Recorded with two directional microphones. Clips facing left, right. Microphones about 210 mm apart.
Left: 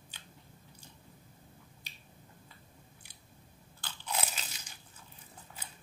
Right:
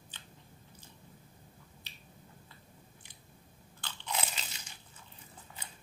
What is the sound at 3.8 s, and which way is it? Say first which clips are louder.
Crunch: even; 5° left (ahead or behind).